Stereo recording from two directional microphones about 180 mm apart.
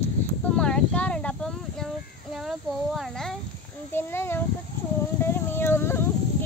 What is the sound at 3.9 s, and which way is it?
A child's voice, 15° left (ahead or behind).